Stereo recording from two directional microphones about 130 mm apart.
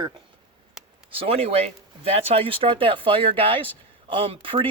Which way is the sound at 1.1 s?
50° right (ahead or behind).